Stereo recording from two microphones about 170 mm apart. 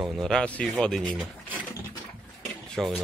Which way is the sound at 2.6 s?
5° left (ahead or behind).